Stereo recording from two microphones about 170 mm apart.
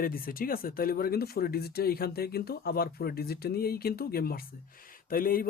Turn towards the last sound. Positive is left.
turn(degrees=55)  # may be behind; listen again after turning